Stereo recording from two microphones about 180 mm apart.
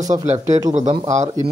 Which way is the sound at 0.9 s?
20° right (ahead or behind).